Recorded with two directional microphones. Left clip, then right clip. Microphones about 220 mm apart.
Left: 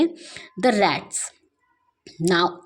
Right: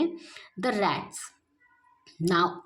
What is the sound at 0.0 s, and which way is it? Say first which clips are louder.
A woman's voice: left 7 dB; 20° left (ahead or behind).